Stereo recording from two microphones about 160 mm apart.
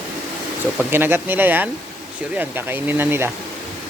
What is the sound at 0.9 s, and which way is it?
Speech, 15° right (ahead or behind).